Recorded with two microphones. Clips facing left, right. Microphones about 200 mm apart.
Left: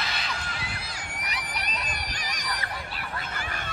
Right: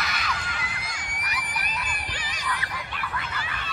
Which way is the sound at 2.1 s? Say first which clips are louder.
Left 1 dB; 50° left (ahead or behind).